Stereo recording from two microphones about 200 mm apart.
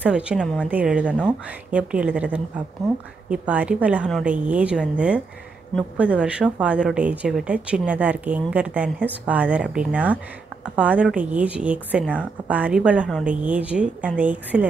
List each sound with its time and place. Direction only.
0.0 s a woman's voice: 5° right (ahead or behind)